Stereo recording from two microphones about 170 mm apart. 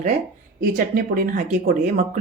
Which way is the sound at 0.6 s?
55° right (ahead or behind).